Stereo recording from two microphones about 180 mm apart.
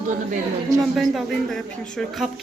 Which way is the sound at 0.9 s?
Centre (ahead or behind).